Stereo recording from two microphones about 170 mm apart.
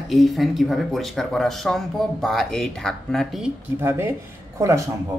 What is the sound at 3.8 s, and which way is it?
Speech, 15° right (ahead or behind).